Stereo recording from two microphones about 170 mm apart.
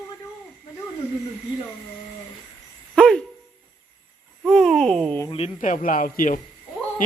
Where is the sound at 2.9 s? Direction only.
5° left (ahead or behind).